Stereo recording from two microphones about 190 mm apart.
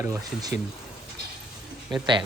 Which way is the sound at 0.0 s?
15° right (ahead or behind).